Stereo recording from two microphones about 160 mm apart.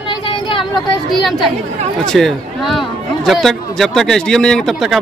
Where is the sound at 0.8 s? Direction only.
30° left (ahead or behind).